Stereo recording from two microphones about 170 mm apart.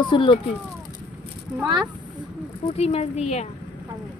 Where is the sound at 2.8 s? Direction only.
40° left (ahead or behind).